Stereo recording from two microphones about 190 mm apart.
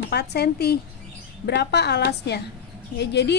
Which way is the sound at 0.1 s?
60° left (ahead or behind).